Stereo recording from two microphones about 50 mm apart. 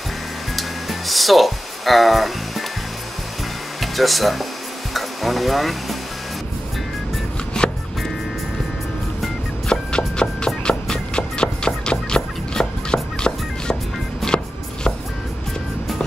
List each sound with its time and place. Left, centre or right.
0.6 s music: centre
3.8 s speech: centre
7.6 s music: centre
9.7 s music: centre